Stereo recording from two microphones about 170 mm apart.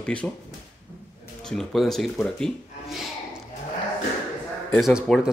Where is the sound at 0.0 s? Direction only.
5° left (ahead or behind).